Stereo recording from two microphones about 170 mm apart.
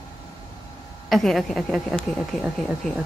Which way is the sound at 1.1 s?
Centre (ahead or behind).